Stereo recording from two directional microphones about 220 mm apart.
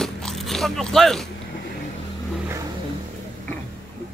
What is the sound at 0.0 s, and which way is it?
Biting, centre (ahead or behind).